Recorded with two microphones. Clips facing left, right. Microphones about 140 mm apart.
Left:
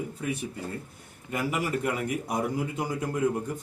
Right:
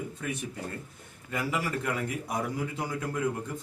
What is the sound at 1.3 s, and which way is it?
A man's voice, 15° left (ahead or behind).